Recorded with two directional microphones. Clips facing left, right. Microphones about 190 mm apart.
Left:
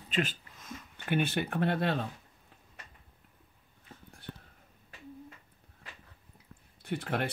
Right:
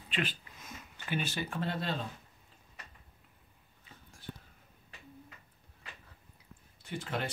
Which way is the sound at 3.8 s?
60° left (ahead or behind).